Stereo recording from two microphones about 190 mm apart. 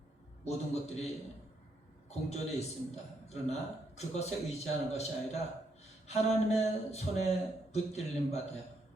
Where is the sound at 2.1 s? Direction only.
35° left (ahead or behind).